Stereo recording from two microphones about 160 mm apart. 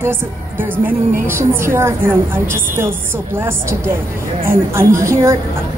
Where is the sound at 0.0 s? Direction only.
15° right (ahead or behind).